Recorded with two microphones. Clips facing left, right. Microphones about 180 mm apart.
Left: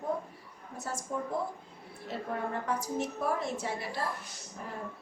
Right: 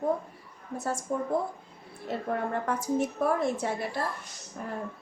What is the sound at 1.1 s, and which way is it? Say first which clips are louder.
A woman's voice: right 4 dB; 50° right (ahead or behind).